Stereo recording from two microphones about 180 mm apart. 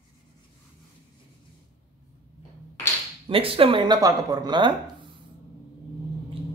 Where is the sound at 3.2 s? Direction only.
30° right (ahead or behind).